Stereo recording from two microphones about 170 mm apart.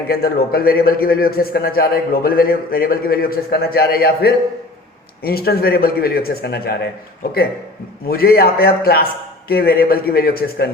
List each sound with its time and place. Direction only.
0.1 s a man's voice: 65° left (ahead or behind)
8.1 s a man's voice: 65° left (ahead or behind)